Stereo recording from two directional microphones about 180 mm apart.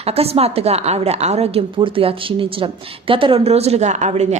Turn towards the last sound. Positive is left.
turn(degrees=-40)  # may be behind; listen again after turning